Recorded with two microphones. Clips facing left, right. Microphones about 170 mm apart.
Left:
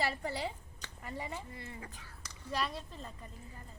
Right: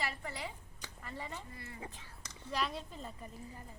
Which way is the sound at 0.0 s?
35° left (ahead or behind).